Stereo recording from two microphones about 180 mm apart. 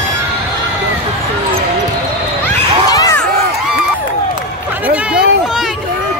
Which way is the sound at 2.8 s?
20° left (ahead or behind).